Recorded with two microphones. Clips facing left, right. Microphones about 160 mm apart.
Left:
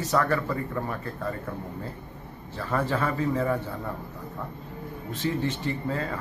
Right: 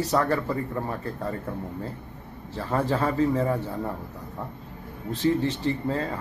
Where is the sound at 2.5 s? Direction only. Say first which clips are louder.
Right 2 dB; 30° right (ahead or behind).